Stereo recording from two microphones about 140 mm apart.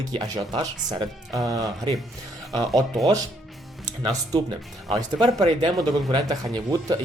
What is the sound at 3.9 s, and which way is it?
A man's voice, 30° right (ahead or behind).